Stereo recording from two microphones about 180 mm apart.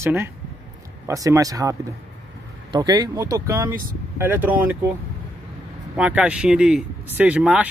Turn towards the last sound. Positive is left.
turn(degrees=-5)  # may be behind; listen again after turning